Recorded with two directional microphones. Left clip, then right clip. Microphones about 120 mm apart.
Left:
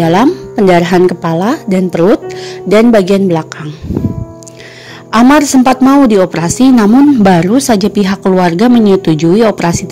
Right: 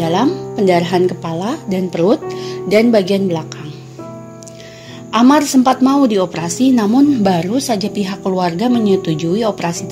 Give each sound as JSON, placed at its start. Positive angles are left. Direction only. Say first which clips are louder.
{"t": 0.0, "sound": "speech", "louder": "left 6 dB", "side_deg": 45}
{"t": 5.1, "sound": "a woman's voice", "louder": "left 5 dB", "side_deg": 45}